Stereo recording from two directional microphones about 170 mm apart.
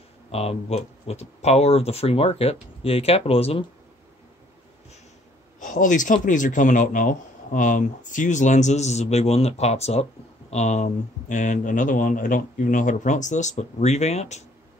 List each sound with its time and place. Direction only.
0.3 s speech: 35° left (ahead or behind)
5.6 s a man's voice: 50° left (ahead or behind)